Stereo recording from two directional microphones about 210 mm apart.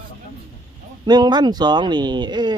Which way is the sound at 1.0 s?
20° right (ahead or behind).